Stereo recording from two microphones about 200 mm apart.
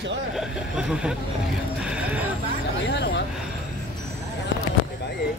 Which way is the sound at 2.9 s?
60° left (ahead or behind).